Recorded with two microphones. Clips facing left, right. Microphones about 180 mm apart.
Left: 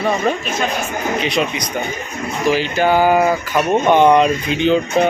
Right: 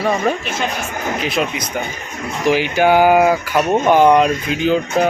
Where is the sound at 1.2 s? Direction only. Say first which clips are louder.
Right 1 dB; centre (ahead or behind).